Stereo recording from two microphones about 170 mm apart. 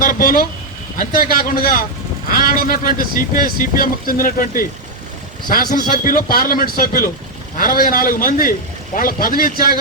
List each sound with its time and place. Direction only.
0.0 s speech: 55° left (ahead or behind)
5.9 s speech: 55° left (ahead or behind)